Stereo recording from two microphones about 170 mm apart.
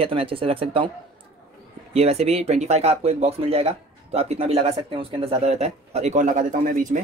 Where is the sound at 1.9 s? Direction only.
40° right (ahead or behind).